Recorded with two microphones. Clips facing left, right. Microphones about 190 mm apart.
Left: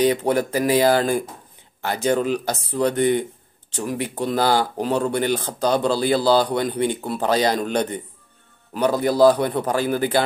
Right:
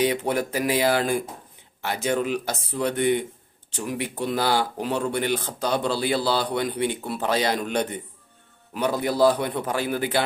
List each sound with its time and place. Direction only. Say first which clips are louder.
0.0 s a man's voice: left 4 dB; 35° left (ahead or behind)